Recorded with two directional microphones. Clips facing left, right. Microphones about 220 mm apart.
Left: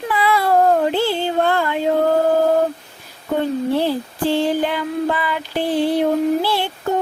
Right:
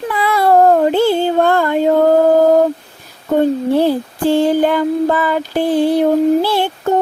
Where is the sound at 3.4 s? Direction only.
45° right (ahead or behind).